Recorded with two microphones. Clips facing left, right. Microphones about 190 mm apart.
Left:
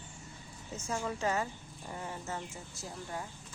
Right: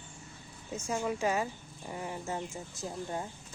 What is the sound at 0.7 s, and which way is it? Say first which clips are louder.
Speech: right 3 dB; 10° right (ahead or behind).